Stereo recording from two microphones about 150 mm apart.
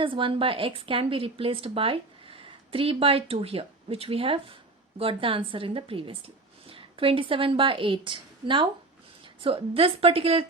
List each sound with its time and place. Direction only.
0.0 s a woman's voice: 35° right (ahead or behind)